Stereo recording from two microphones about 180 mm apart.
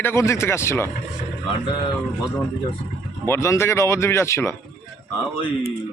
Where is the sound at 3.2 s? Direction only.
15° left (ahead or behind).